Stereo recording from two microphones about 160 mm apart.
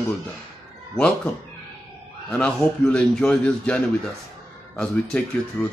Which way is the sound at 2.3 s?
5° left (ahead or behind).